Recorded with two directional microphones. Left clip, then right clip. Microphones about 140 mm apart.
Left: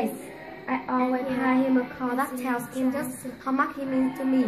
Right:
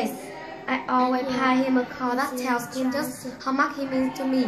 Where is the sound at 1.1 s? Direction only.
10° right (ahead or behind).